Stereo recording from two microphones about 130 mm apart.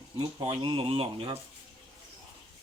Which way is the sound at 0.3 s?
45° right (ahead or behind).